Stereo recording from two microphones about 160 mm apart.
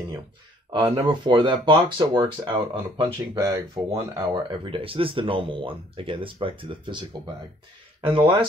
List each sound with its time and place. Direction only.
0.7 s speech: 30° right (ahead or behind)